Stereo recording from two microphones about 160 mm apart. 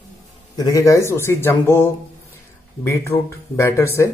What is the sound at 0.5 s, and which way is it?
A man's voice, 20° left (ahead or behind).